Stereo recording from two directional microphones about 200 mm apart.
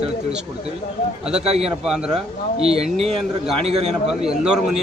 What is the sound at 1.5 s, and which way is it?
Speech, 30° right (ahead or behind).